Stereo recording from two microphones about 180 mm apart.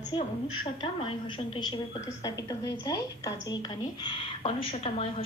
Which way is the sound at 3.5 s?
25° left (ahead or behind).